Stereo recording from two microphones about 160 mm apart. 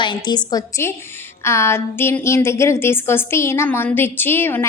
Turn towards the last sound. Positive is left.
turn(degrees=15)  # may be behind; listen again after turning